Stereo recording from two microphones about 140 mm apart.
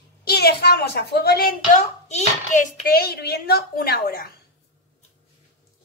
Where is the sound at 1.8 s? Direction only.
50° left (ahead or behind).